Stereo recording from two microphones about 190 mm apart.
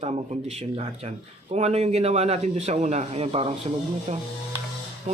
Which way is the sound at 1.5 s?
35° right (ahead or behind).